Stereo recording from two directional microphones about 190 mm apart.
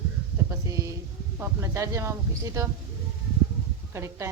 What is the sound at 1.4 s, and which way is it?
Speech, 15° right (ahead or behind).